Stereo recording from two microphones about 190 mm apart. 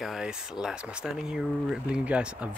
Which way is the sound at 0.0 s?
Centre (ahead or behind).